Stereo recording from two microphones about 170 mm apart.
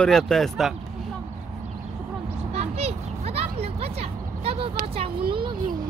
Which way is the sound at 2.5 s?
40° right (ahead or behind).